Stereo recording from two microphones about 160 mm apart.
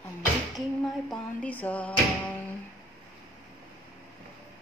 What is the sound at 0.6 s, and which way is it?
Music, centre (ahead or behind).